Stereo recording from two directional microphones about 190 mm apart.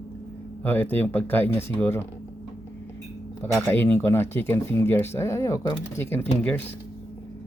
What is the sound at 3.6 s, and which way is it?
Speech, 10° left (ahead or behind).